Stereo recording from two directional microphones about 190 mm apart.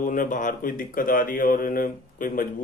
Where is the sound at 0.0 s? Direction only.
45° left (ahead or behind).